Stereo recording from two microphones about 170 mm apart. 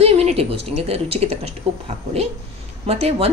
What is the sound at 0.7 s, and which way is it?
A woman's voice, 35° right (ahead or behind).